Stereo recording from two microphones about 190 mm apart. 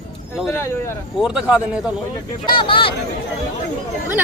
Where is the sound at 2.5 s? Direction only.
25° left (ahead or behind).